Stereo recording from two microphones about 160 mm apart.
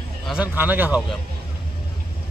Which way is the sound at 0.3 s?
10° right (ahead or behind).